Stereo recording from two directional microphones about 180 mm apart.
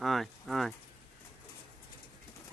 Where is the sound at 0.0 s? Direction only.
Centre (ahead or behind).